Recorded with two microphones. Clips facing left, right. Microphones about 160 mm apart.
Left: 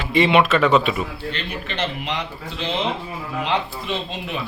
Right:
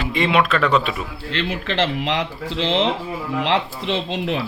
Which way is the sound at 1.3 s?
90° right.